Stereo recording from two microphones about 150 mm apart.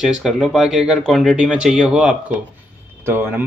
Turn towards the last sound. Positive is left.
turn(degrees=-15)  # may be behind; listen again after turning